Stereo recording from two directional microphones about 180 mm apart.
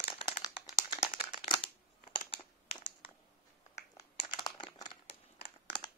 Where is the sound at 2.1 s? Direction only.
30° left (ahead or behind).